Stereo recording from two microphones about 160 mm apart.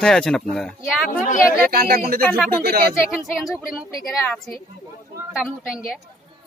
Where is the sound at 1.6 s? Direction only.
65° right (ahead or behind).